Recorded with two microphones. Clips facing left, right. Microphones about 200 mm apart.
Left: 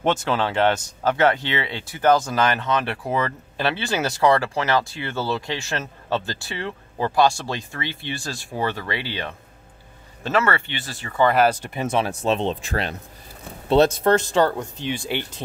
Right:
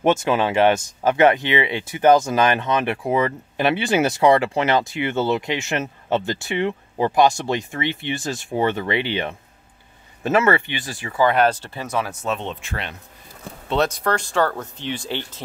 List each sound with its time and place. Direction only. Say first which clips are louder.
0.0 s speech: right 3 dB; 15° right (ahead or behind)
10.4 s speech: right 5 dB; 15° right (ahead or behind)
11.2 s speech: even; 5° left (ahead or behind)
11.6 s speech: left 3 dB; 20° left (ahead or behind)